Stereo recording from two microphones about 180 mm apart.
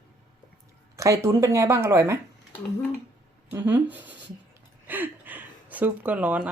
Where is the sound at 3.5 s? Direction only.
10° right (ahead or behind).